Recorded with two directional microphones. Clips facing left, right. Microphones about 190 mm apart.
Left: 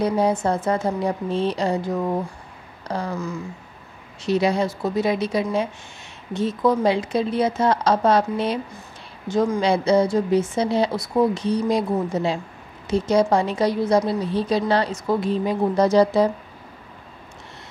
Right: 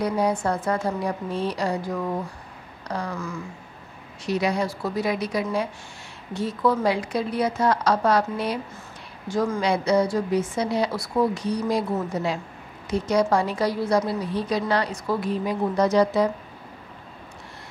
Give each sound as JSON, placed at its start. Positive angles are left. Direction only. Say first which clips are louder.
{"t": 0.0, "sound": "a woman's voice", "louder": "left 3 dB", "side_deg": 25}
{"t": 11.6, "sound": "speech", "louder": "left 2 dB", "side_deg": 15}
{"t": 12.1, "sound": "a woman's voice", "louder": "left 3 dB", "side_deg": 25}